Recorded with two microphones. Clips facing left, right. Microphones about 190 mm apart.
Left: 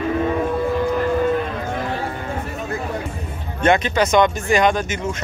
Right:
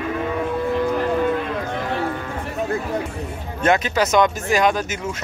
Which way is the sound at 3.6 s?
5° right (ahead or behind).